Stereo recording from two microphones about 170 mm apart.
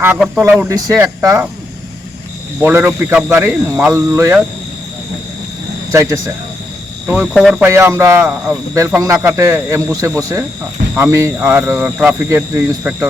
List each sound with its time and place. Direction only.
0.0 s speech: 10° right (ahead or behind)
2.6 s speech: 10° right (ahead or behind)
5.9 s speech: 15° right (ahead or behind)
7.3 s speech: centre (ahead or behind)
7.6 s speech: 15° right (ahead or behind)
8.7 s speech: 20° right (ahead or behind)